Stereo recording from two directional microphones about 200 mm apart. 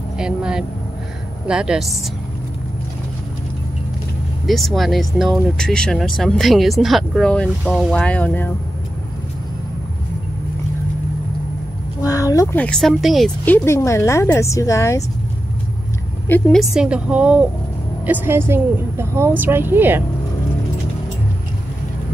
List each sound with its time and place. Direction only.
0.2 s speech: 5° right (ahead or behind)
4.5 s speech: centre (ahead or behind)
12.0 s a sound: 15° left (ahead or behind)
12.6 s speech: centre (ahead or behind)
13.7 s a woman's voice: 15° left (ahead or behind)
16.3 s a woman's voice: 5° left (ahead or behind); by 20.0 s 10° right (ahead or behind)